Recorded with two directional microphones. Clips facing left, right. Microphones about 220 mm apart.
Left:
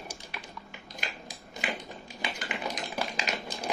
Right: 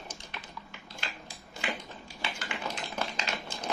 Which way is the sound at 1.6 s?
20° left (ahead or behind).